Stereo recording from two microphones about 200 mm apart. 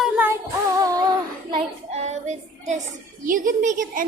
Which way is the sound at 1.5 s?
35° right (ahead or behind).